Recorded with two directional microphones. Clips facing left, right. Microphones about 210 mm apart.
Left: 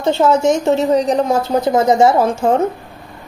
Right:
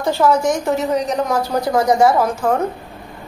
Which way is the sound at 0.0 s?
25° left (ahead or behind).